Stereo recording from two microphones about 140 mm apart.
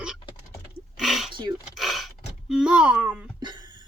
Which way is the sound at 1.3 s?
35° right (ahead or behind).